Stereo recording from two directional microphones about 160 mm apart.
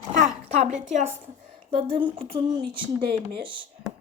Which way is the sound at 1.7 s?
35° right (ahead or behind).